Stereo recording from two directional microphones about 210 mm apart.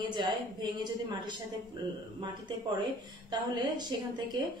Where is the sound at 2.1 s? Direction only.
20° right (ahead or behind).